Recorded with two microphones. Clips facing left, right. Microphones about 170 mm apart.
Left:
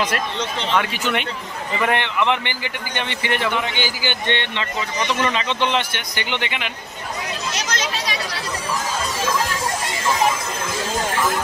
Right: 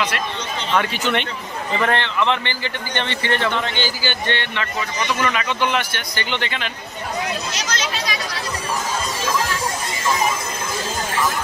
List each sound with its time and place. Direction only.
0.7 s speech: 5° left (ahead or behind)
1.8 s a man's voice: 15° left (ahead or behind)